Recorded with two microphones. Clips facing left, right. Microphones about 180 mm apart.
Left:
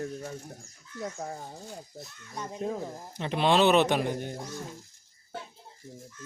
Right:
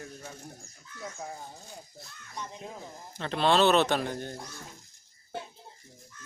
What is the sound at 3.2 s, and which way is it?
Speech, 15° left (ahead or behind).